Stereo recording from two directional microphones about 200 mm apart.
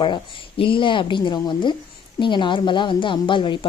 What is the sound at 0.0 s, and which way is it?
Speech, 25° left (ahead or behind).